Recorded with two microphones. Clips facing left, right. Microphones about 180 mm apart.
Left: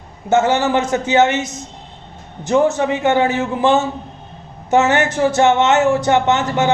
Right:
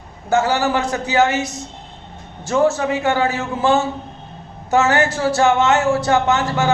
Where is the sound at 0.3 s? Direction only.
20° left (ahead or behind).